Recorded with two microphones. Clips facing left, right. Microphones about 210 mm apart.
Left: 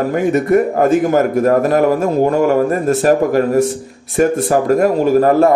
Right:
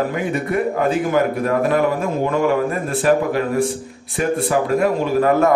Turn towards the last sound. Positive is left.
turn(degrees=40)  # may be behind; listen again after turning